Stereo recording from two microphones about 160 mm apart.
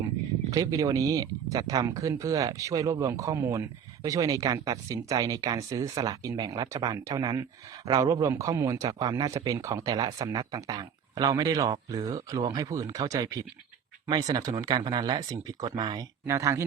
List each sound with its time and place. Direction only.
0.5 s speech: 20° right (ahead or behind)